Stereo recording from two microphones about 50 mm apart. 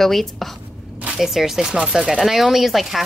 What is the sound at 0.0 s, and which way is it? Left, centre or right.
Speech, centre.